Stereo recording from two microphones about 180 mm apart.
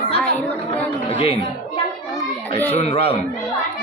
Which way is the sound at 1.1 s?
30° left (ahead or behind).